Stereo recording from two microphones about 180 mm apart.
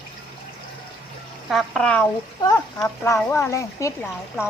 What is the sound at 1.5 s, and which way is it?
Speech, centre (ahead or behind).